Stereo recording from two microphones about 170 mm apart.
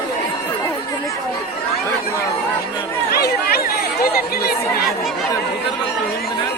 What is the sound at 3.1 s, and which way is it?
Chatter, 65° left (ahead or behind).